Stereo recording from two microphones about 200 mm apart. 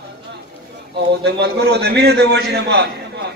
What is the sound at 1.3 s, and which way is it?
A man's voice, 55° right (ahead or behind).